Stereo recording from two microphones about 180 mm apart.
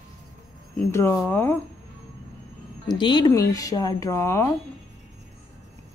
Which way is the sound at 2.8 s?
25° left (ahead or behind).